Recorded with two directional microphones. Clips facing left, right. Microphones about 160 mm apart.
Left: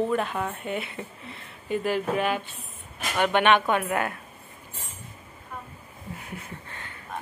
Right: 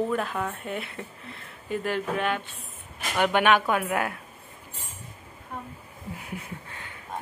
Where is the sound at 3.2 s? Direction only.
10° right (ahead or behind).